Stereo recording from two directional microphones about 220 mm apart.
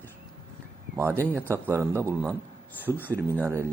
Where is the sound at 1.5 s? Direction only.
10° right (ahead or behind).